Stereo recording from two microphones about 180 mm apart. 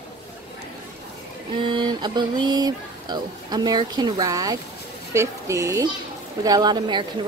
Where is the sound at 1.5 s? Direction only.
25° right (ahead or behind).